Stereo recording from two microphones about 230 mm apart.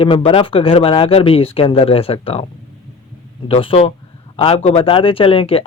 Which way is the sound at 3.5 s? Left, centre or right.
Left.